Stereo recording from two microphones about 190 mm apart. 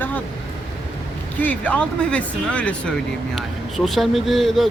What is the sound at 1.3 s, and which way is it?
Speech, 10° left (ahead or behind).